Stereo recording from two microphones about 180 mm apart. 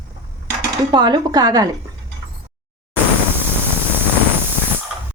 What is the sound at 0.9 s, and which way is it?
Speech, 25° right (ahead or behind).